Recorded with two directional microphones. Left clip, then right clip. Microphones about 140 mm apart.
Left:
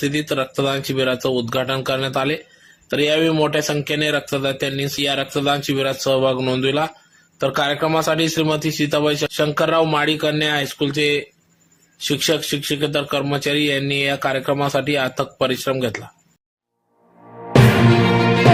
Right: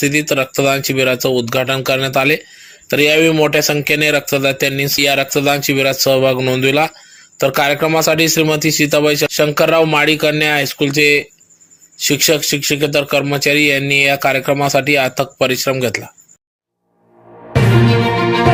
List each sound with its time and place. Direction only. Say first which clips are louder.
0.0 s speech: right 6 dB; 25° right (ahead or behind)